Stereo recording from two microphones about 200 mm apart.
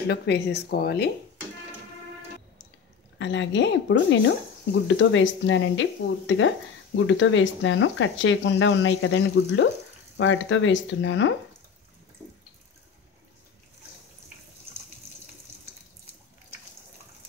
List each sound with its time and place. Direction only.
0.1 s a woman's voice: 55° left (ahead or behind)
3.2 s a woman's voice: 65° left (ahead or behind)